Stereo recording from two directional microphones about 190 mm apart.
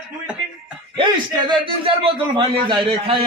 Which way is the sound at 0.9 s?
25° right (ahead or behind).